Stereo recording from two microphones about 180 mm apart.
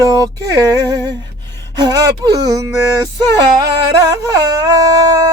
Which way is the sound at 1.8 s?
20° right (ahead or behind).